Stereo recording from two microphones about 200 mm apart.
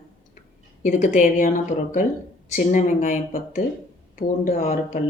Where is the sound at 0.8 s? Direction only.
40° left (ahead or behind).